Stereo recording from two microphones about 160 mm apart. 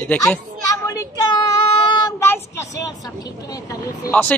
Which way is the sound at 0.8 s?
25° left (ahead or behind).